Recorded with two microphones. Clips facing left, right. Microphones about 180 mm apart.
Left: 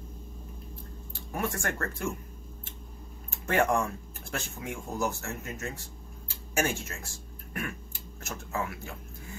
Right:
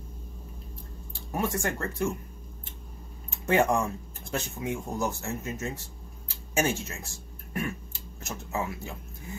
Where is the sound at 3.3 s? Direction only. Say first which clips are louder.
Right 2 dB; 15° right (ahead or behind).